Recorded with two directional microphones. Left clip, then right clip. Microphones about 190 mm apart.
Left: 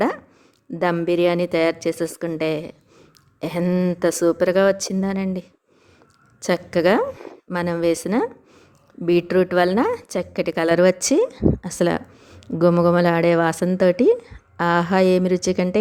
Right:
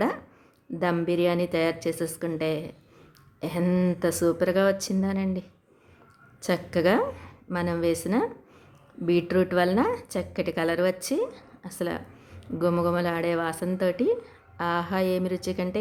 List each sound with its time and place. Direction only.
0.7 s a woman's voice: 30° left (ahead or behind)
3.6 s speech: 25° left (ahead or behind)
4.0 s a woman's voice: 35° left (ahead or behind)